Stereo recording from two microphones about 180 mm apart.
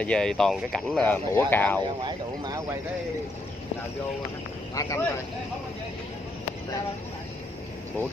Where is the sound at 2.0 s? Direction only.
25° right (ahead or behind).